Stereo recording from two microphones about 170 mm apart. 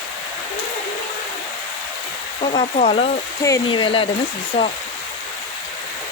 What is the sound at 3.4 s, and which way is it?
Speech, 25° left (ahead or behind).